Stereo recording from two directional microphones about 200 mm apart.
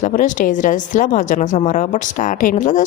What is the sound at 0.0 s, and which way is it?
A woman's voice, 40° left (ahead or behind).